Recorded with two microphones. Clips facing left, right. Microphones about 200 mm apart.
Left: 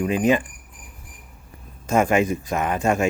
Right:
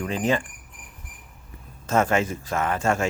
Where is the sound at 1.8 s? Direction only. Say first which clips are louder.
Left 3 dB; 15° left (ahead or behind).